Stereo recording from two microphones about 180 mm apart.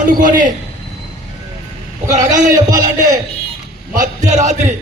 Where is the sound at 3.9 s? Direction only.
45° right (ahead or behind).